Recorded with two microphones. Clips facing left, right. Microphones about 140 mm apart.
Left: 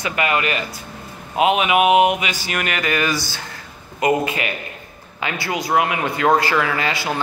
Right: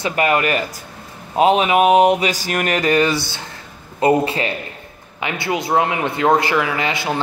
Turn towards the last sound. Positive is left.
turn(degrees=-20)  # may be behind; listen again after turning